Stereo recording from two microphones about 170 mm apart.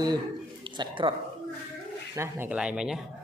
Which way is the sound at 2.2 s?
10° right (ahead or behind).